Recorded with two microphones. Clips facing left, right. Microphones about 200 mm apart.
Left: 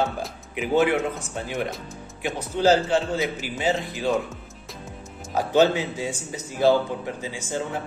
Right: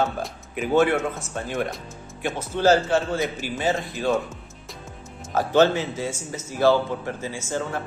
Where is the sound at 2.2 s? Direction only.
15° left (ahead or behind).